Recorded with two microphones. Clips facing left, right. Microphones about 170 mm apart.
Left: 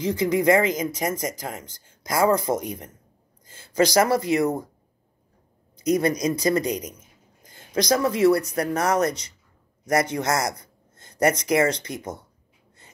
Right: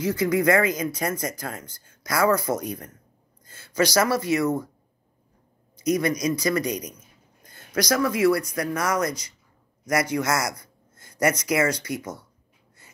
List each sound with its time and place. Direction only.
0.0 s speech: 25° left (ahead or behind)
5.9 s speech: 30° left (ahead or behind)